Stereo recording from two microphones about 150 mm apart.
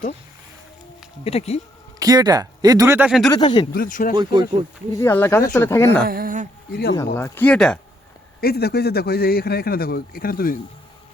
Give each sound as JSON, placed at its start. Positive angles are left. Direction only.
{"t": 1.2, "sound": "speech", "side_deg": 45}
{"t": 2.0, "sound": "speech", "side_deg": -25}
{"t": 3.1, "sound": "speech", "side_deg": 0}
{"t": 3.3, "sound": "speech", "side_deg": 35}
{"t": 3.7, "sound": "speech", "side_deg": 70}
{"t": 4.1, "sound": "speech", "side_deg": -30}
{"t": 4.9, "sound": "speech", "side_deg": 15}
{"t": 6.1, "sound": "speech", "side_deg": -75}
{"t": 6.9, "sound": "speech", "side_deg": 20}
{"t": 7.4, "sound": "speech", "side_deg": 5}
{"t": 8.4, "sound": "a man's voice", "side_deg": 90}